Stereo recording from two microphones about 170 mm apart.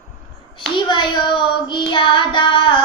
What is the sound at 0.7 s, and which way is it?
Child singing, 30° left (ahead or behind).